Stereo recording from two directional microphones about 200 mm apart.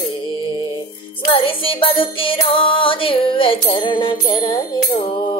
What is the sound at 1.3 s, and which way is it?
Music, 25° left (ahead or behind).